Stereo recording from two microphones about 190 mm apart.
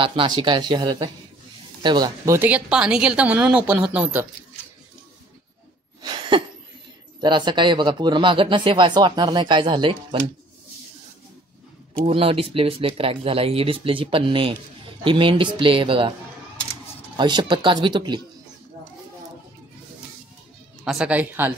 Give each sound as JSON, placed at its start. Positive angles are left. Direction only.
{"t": 0.0, "sound": "a woman's voice", "side_deg": -25}
{"t": 6.0, "sound": "cough", "side_deg": -25}
{"t": 7.2, "sound": "speech", "side_deg": -25}
{"t": 12.0, "sound": "speech", "side_deg": -30}
{"t": 17.2, "sound": "speech", "side_deg": -25}
{"t": 20.8, "sound": "a woman's voice", "side_deg": -5}